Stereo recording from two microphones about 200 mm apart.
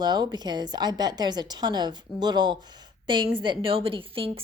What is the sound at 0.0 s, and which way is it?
A woman's voice, 20° right (ahead or behind).